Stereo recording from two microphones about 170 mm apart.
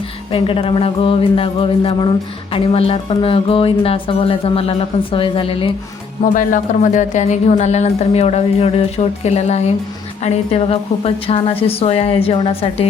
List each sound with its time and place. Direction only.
0.3 s speech: 30° left (ahead or behind)
6.2 s speech: 50° left (ahead or behind)